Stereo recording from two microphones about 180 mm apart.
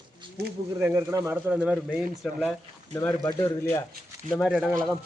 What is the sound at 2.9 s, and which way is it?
Speech, 20° left (ahead or behind).